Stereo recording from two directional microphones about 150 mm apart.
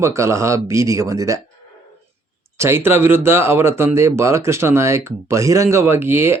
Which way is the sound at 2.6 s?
15° right (ahead or behind).